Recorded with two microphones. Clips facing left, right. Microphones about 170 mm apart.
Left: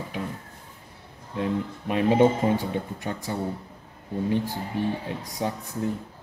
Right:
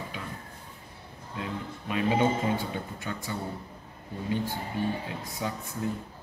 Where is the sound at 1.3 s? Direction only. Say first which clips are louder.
Left 8 dB; 40° left (ahead or behind).